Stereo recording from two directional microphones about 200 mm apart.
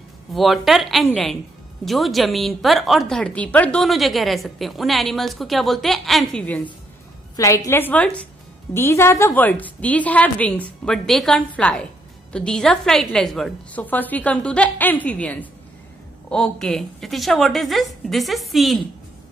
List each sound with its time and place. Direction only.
0.3 s a woman's voice: centre (ahead or behind)